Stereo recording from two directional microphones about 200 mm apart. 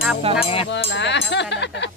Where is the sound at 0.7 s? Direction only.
60° left (ahead or behind).